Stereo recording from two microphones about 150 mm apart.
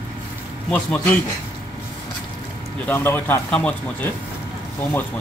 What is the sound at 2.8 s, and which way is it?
Speech, 15° left (ahead or behind).